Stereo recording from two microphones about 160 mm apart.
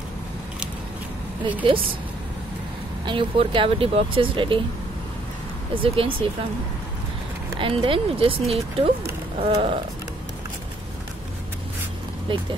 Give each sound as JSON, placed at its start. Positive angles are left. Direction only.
{"t": 1.6, "sound": "speech", "side_deg": -30}
{"t": 3.1, "sound": "speech", "side_deg": -30}
{"t": 5.8, "sound": "speech", "side_deg": -35}
{"t": 7.5, "sound": "speech", "side_deg": -35}